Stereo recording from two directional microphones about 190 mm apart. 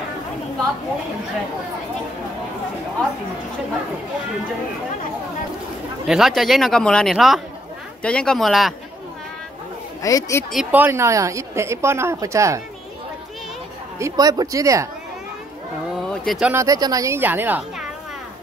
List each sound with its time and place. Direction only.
6.0 s a man's voice: centre (ahead or behind)
10.0 s speech: 15° left (ahead or behind)
10.5 s a woman's voice: 5° right (ahead or behind)
13.9 s a woman's voice: 15° right (ahead or behind)
16.1 s speech: centre (ahead or behind)
16.6 s a woman's voice: 20° right (ahead or behind)